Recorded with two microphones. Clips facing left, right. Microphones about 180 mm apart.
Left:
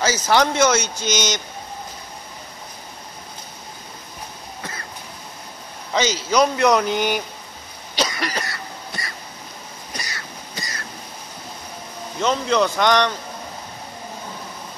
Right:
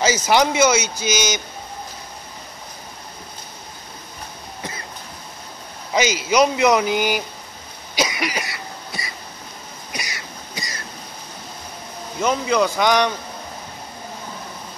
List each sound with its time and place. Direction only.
0.0 s speech: 15° right (ahead or behind)
5.9 s speech: 10° right (ahead or behind)
7.9 s cough: 10° right (ahead or behind)
12.2 s speech: 5° right (ahead or behind)